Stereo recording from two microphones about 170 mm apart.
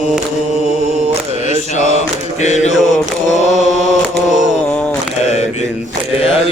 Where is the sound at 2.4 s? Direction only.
45° left (ahead or behind).